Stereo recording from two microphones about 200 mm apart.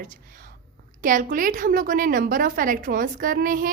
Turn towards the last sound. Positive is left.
turn(degrees=-45)  # may be behind; listen again after turning